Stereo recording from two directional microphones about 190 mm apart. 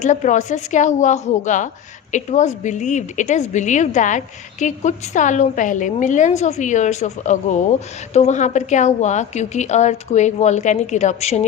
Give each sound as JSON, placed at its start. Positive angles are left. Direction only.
{"t": 0.0, "sound": "a woman's voice", "side_deg": 40}